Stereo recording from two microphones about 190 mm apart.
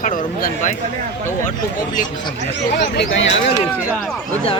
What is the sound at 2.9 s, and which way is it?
Speech, 75° left (ahead or behind).